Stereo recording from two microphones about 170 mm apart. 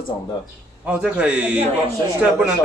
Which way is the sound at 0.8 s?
5° right (ahead or behind).